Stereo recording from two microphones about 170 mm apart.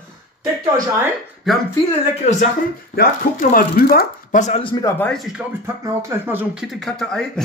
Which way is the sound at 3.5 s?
60° left (ahead or behind).